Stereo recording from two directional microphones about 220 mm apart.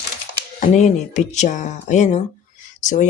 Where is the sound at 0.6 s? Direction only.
35° left (ahead or behind).